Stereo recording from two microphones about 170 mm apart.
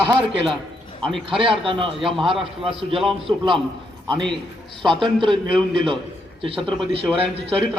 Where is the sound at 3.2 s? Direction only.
30° right (ahead or behind).